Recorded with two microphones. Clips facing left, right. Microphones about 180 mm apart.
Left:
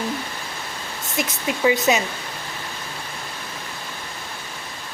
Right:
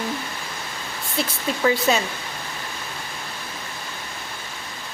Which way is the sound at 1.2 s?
15° left (ahead or behind).